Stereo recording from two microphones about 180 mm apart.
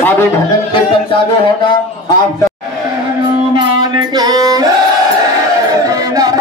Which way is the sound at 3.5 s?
20° right (ahead or behind).